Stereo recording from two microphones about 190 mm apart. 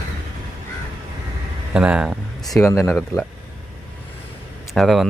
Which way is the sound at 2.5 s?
15° left (ahead or behind).